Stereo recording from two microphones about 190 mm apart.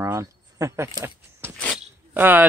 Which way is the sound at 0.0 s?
15° right (ahead or behind).